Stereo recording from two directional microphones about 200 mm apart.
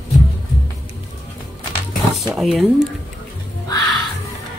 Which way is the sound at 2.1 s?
Centre (ahead or behind).